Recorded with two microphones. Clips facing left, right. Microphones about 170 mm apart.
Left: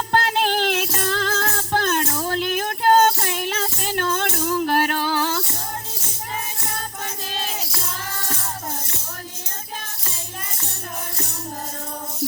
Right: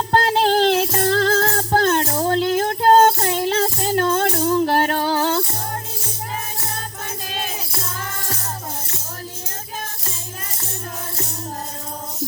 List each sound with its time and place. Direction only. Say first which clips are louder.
0.1 s music: right 4 dB; 35° right (ahead or behind)